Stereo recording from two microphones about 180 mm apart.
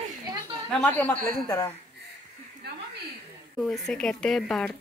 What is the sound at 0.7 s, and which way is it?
Speech, 5° left (ahead or behind).